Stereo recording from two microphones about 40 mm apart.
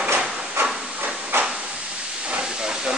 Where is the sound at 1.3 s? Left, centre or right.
Right.